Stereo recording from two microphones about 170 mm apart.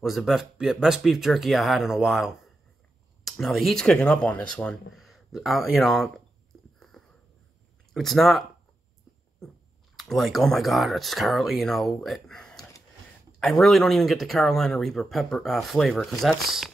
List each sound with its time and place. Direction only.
0.0 s speech: centre (ahead or behind)
6.5 s a sound: centre (ahead or behind)
7.9 s speech: centre (ahead or behind)
9.4 s chewing: 5° left (ahead or behind)
9.9 s speech: centre (ahead or behind)